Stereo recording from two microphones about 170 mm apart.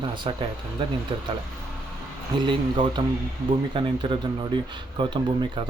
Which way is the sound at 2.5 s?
30° right (ahead or behind).